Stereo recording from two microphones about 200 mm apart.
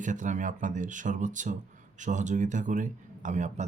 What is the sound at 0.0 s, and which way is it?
A man's voice, 40° right (ahead or behind).